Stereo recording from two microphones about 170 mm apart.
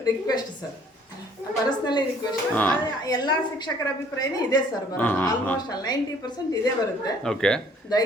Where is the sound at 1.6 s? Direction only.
25° left (ahead or behind).